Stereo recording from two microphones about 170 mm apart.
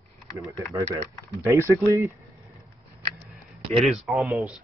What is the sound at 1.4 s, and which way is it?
Speech, 15° right (ahead or behind).